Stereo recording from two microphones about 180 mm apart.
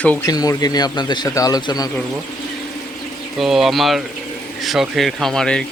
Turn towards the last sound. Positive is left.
turn(degrees=5)  # may be behind; listen again after turning